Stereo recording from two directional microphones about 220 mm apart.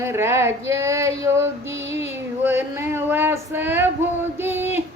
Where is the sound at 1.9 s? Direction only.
10° right (ahead or behind).